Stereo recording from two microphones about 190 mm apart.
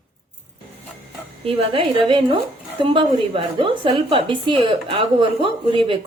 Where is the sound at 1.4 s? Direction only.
30° right (ahead or behind).